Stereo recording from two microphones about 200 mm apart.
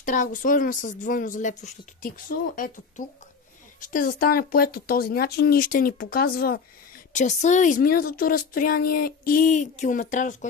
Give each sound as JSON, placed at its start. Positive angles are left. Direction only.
{"t": 0.0, "sound": "speech", "side_deg": 40}
{"t": 3.8, "sound": "speech", "side_deg": 45}
{"t": 7.2, "sound": "speech", "side_deg": 35}